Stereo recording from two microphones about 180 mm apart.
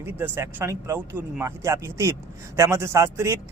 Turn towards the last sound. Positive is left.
turn(degrees=-15)  # may be behind; listen again after turning